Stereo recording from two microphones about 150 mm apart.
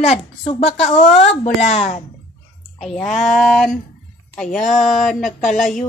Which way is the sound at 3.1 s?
50° left (ahead or behind).